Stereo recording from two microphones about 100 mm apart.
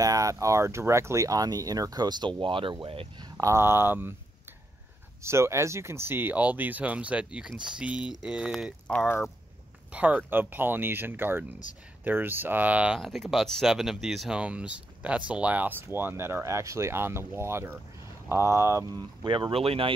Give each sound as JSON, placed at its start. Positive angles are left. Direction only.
{"t": 0.0, "sound": "speech", "side_deg": -35}
{"t": 3.2, "sound": "a sound", "side_deg": -40}
{"t": 3.5, "sound": "speech", "side_deg": -25}
{"t": 5.2, "sound": "speech", "side_deg": -25}
{"t": 9.9, "sound": "speech", "side_deg": -10}
{"t": 13.0, "sound": "speech", "side_deg": 0}
{"t": 18.9, "sound": "speech", "side_deg": -55}